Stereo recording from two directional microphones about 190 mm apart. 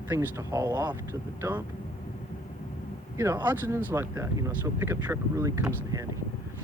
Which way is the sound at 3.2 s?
15° right (ahead or behind).